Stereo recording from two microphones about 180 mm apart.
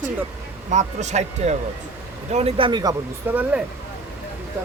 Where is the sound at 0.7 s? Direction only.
40° right (ahead or behind); by 2.9 s 25° right (ahead or behind).